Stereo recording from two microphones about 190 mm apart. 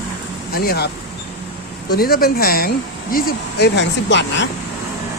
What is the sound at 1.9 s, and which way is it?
Speech, 50° left (ahead or behind).